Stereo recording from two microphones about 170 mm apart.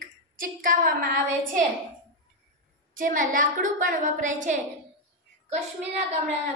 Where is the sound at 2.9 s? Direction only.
50° right (ahead or behind).